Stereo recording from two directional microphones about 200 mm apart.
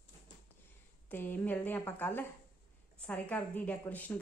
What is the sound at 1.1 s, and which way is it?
A woman's voice, 10° left (ahead or behind).